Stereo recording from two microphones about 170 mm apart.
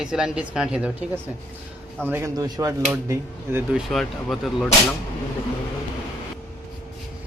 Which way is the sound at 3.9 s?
Centre (ahead or behind).